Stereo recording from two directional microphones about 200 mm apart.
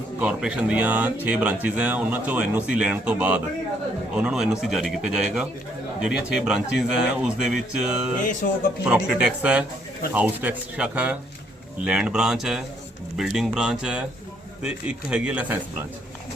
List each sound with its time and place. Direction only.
0.2 s speech: 5° right (ahead or behind)
8.4 s speech: 45° left (ahead or behind)
8.8 s speech: 5° right (ahead or behind)